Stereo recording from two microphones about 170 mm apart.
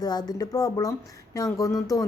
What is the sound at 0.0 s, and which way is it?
Speech, 25° left (ahead or behind).